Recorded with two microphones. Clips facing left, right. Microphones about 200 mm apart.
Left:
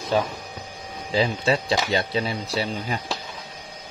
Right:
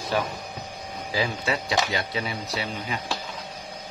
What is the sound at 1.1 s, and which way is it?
Speech, 25° left (ahead or behind).